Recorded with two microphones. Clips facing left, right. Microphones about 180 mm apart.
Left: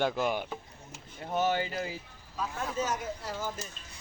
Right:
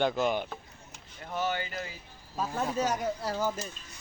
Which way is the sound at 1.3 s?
25° left (ahead or behind).